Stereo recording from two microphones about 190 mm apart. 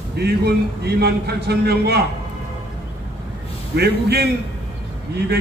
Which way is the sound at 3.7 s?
60° right (ahead or behind).